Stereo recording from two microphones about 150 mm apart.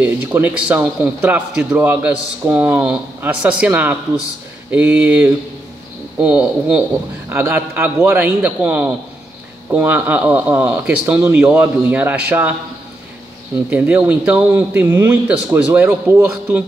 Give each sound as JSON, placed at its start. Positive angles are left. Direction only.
{"t": 0.0, "sound": "a man's voice", "side_deg": -10}
{"t": 13.7, "sound": "a man's voice", "side_deg": -10}